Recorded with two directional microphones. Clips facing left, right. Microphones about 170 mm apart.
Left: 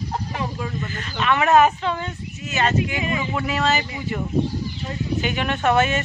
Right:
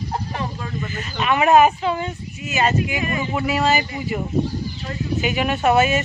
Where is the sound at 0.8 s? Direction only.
10° right (ahead or behind).